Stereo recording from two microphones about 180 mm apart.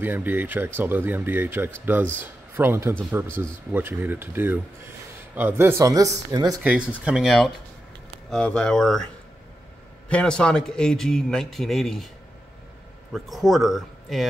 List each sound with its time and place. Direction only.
0.0 s speech: 10° right (ahead or behind)
6.6 s a man's voice: 5° right (ahead or behind)
13.1 s a man's voice: centre (ahead or behind)